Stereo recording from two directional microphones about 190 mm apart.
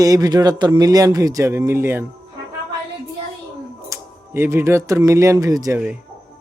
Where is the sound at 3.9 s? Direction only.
10° right (ahead or behind).